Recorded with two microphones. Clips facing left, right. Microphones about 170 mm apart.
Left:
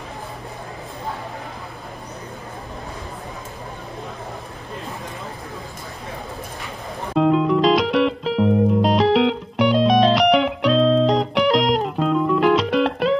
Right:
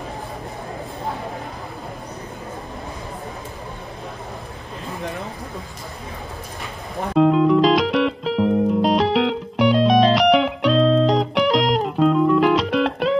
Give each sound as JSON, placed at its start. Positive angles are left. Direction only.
{"t": 7.2, "sound": "music", "side_deg": 0}